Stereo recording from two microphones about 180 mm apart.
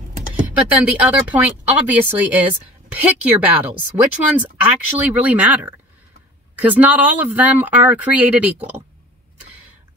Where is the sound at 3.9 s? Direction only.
20° right (ahead or behind).